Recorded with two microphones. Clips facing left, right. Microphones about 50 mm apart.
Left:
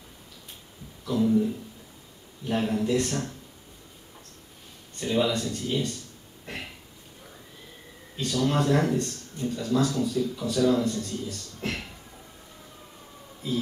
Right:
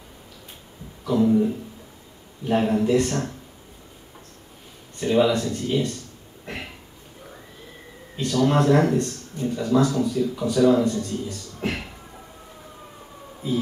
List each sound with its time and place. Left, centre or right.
1.0 s speech: centre
4.9 s speech: centre
6.4 s a sound: centre
8.2 s speech: centre
9.5 s speech: right
9.8 s speech: centre